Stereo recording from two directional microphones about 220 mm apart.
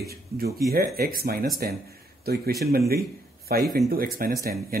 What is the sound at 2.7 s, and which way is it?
Speech, 45° right (ahead or behind).